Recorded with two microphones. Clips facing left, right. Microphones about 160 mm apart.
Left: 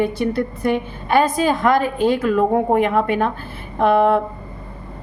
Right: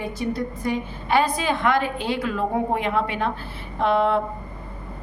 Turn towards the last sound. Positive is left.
turn(degrees=55)  # may be behind; listen again after turning